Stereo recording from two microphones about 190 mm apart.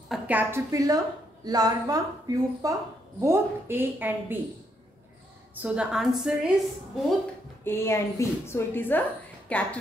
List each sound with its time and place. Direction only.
0.1 s a woman's voice: 10° right (ahead or behind)
5.5 s a woman's voice: 5° right (ahead or behind)
7.6 s a woman's voice: 15° left (ahead or behind)